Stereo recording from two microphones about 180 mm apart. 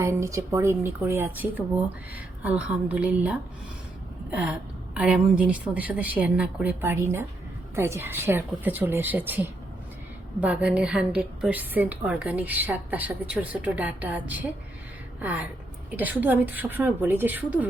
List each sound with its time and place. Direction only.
0.0 s a woman's voice: 15° right (ahead or behind)
4.3 s a sound: 5° right (ahead or behind)
4.9 s a woman's voice: 5° right (ahead or behind)